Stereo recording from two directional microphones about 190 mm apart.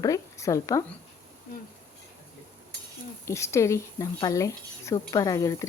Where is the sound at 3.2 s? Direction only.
15° left (ahead or behind).